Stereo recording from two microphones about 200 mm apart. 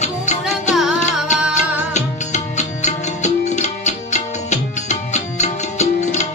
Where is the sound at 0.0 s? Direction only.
35° left (ahead or behind).